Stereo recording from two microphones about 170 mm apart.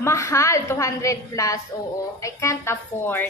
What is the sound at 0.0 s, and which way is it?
A woman's voice, 15° left (ahead or behind).